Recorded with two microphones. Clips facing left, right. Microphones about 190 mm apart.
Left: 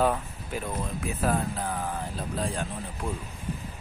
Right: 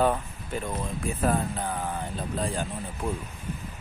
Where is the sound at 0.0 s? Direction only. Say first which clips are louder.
Right 1 dB; centre (ahead or behind).